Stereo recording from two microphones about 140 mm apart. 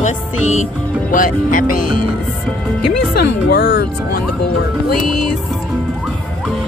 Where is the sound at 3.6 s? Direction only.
90° left.